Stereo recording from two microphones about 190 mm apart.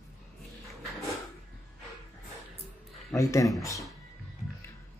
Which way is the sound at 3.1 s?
15° left (ahead or behind).